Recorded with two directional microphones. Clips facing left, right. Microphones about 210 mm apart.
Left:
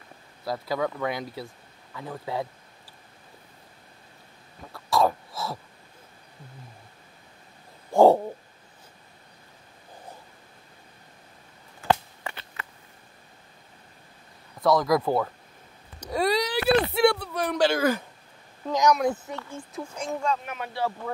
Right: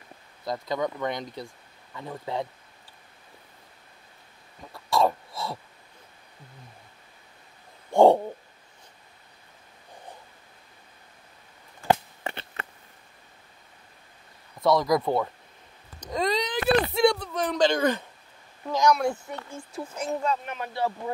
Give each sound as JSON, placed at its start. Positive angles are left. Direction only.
{"t": 0.5, "sound": "speech", "side_deg": 5}
{"t": 4.7, "sound": "wail", "side_deg": 0}
{"t": 7.9, "sound": "owl", "side_deg": 0}
{"t": 11.9, "sound": "a sound", "side_deg": -25}
{"t": 14.6, "sound": "speech", "side_deg": 0}
{"t": 16.0, "sound": "a sound", "side_deg": 10}
{"t": 18.7, "sound": "speech", "side_deg": 15}
{"t": 19.7, "sound": "speech", "side_deg": -5}